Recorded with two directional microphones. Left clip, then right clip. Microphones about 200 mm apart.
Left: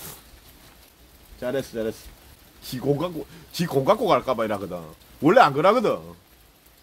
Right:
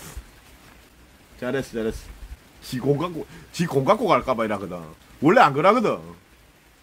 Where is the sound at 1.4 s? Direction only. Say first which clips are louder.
Even; centre (ahead or behind).